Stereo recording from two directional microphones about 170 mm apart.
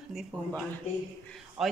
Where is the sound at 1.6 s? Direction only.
35° right (ahead or behind).